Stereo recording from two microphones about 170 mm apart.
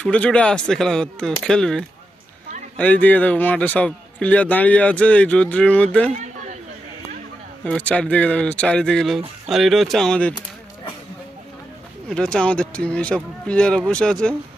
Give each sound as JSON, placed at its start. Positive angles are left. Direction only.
{"t": 0.0, "sound": "a man's voice", "side_deg": 5}
{"t": 6.1, "sound": "chatter", "side_deg": -45}
{"t": 7.6, "sound": "speech", "side_deg": 5}
{"t": 12.0, "sound": "speech", "side_deg": 5}